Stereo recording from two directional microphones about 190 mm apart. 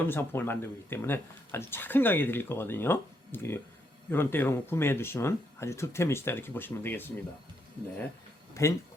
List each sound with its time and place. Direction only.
0.0 s speech: 10° left (ahead or behind)
8.6 s speech: 15° left (ahead or behind)